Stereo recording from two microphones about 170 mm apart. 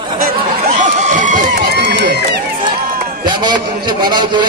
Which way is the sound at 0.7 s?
50° right (ahead or behind).